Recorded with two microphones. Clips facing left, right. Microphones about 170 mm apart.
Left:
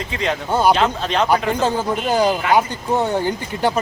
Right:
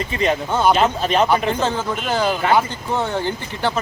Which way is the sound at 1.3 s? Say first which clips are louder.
Left 1 dB; 10° left (ahead or behind).